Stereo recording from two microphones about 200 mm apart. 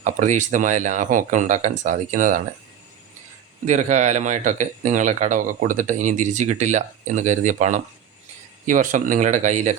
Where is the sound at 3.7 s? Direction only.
35° right (ahead or behind).